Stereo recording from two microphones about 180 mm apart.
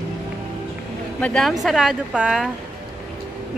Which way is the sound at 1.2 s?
Centre (ahead or behind).